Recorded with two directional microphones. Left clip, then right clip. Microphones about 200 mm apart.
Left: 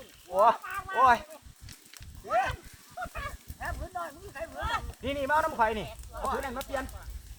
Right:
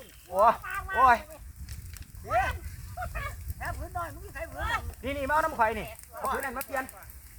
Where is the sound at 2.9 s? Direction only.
5° right (ahead or behind).